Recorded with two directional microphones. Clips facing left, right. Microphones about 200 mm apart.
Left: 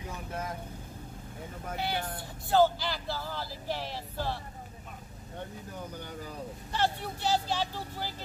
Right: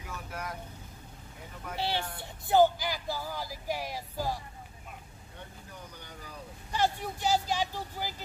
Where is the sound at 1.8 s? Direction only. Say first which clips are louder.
Right 1 dB; 30° right (ahead or behind); by 4.4 s 10° right (ahead or behind).